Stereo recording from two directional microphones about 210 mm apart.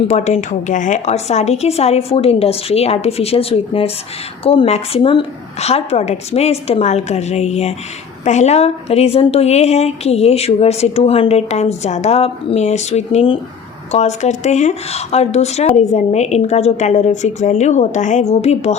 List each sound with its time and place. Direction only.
0.1 s a woman's voice: 35° left (ahead or behind)